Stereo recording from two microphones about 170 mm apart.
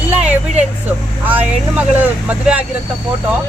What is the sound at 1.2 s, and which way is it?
Speech, 10° right (ahead or behind).